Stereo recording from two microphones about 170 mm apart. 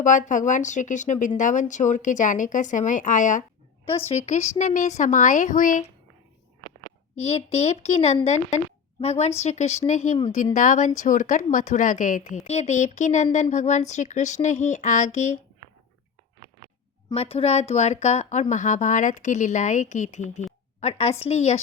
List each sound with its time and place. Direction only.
0.0 s speech: 50° left (ahead or behind)
7.2 s speech: 40° left (ahead or behind)
17.2 s speech: 35° left (ahead or behind)